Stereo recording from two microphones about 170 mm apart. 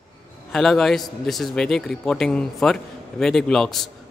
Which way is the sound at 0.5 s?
Centre (ahead or behind).